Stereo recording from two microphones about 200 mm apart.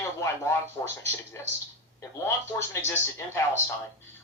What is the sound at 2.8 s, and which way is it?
Speech, 15° left (ahead or behind).